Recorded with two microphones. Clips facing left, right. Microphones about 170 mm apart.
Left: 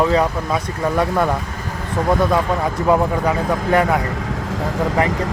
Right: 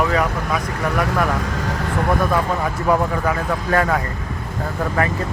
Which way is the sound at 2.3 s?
20° left (ahead or behind).